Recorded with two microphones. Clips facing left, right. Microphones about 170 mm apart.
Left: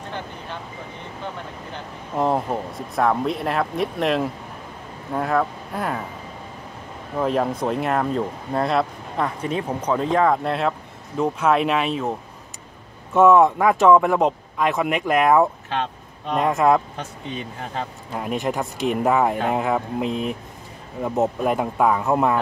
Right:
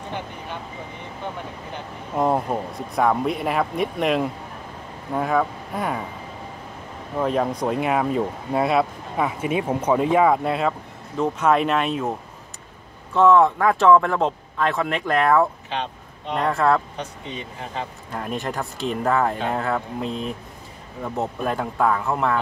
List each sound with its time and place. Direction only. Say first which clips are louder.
2.1 s speech: even; centre (ahead or behind)
7.2 s speech: even; centre (ahead or behind)
13.3 s speech: left 1 dB; 15° left (ahead or behind)
18.1 s speech: left 3 dB; 10° left (ahead or behind)